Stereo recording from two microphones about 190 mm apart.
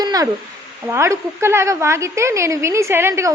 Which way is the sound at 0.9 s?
15° right (ahead or behind).